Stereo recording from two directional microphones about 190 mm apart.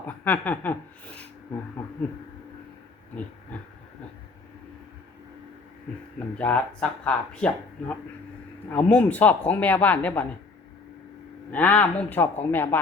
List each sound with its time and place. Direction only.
0.3 s speech: 10° left (ahead or behind)
3.5 s speech: 5° left (ahead or behind)
6.1 s speech: 10° left (ahead or behind)
11.5 s speech: 10° left (ahead or behind)